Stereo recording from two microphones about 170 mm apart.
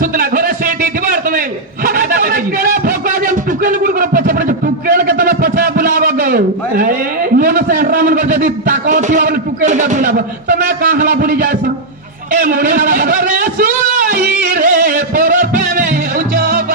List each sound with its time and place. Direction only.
0.0 s a sound: 55° right (ahead or behind)
12.3 s music: 55° right (ahead or behind)
16.3 s music: 75° right (ahead or behind)